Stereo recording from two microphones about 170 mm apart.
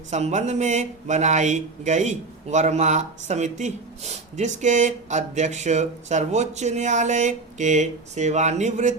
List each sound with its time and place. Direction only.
0.1 s speech: 40° right (ahead or behind)